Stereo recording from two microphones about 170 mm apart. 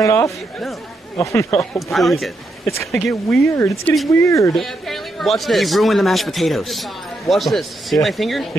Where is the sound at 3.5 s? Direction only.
15° left (ahead or behind).